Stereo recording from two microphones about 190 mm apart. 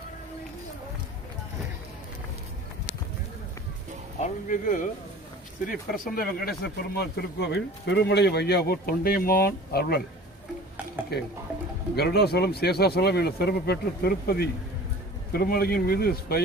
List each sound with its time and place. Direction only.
4.2 s speech: 45° left (ahead or behind)
11.9 s speech: 55° left (ahead or behind)